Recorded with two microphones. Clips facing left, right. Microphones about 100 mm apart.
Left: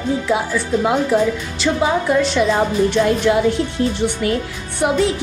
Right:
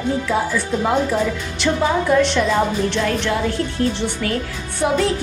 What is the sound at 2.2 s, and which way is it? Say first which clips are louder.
A woman's voice: left 1 dB; 5° left (ahead or behind).